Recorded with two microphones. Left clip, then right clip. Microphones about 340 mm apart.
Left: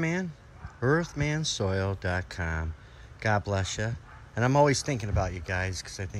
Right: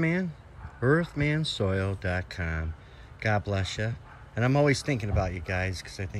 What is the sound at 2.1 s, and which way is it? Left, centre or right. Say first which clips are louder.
Speech: even; left.